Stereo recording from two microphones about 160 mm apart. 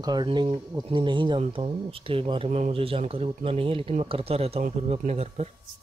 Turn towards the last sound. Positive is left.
turn(degrees=-40)  # may be behind; listen again after turning